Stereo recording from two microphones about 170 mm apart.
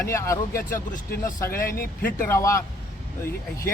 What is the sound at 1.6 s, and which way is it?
Speech, 60° left (ahead or behind).